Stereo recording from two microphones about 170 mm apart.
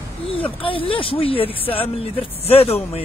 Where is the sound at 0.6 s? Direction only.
30° left (ahead or behind).